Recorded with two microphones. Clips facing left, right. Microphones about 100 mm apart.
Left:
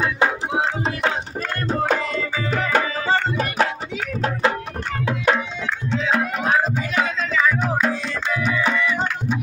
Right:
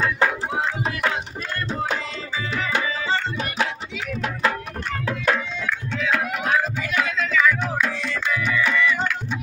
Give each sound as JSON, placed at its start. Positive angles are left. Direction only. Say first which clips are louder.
{"t": 0.0, "sound": "music", "louder": "left 1 dB", "side_deg": 20}
{"t": 1.7, "sound": "tabla", "louder": "left 7 dB", "side_deg": 50}
{"t": 4.2, "sound": "music", "louder": "left 3 dB", "side_deg": 25}
{"t": 5.0, "sound": "tabla", "louder": "left 3 dB", "side_deg": 20}
{"t": 5.9, "sound": "music", "louder": "left 4 dB", "side_deg": 25}